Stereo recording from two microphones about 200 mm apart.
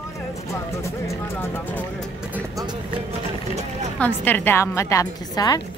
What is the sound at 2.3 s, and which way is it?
Music, 15° right (ahead or behind).